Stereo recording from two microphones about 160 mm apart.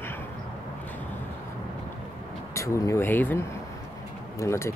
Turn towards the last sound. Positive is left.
turn(degrees=20)  # may be behind; listen again after turning